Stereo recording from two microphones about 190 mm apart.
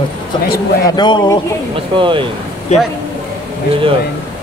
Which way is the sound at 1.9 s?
25° right (ahead or behind).